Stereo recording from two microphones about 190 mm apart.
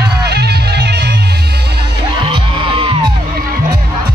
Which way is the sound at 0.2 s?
60° right (ahead or behind).